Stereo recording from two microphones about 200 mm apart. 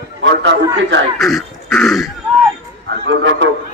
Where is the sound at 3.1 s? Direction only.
60° right (ahead or behind).